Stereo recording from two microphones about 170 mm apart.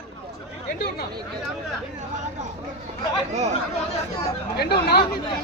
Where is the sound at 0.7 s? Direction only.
70° left (ahead or behind).